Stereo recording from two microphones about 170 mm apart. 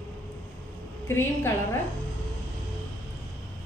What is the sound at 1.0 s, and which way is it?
Speech, 15° left (ahead or behind).